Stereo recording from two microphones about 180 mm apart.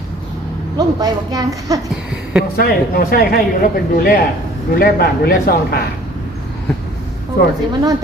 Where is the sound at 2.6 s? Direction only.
55° left (ahead or behind).